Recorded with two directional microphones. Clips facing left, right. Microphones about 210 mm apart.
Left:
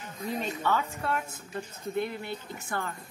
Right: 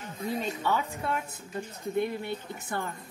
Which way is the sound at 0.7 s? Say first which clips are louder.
Left 1 dB; 15° right (ahead or behind).